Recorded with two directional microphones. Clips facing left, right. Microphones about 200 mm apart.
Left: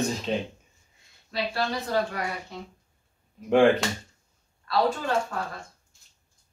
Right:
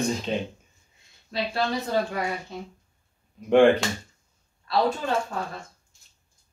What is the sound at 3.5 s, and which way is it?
Speech, centre (ahead or behind).